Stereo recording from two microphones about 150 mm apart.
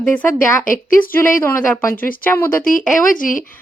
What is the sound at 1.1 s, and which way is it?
Speech, 15° left (ahead or behind).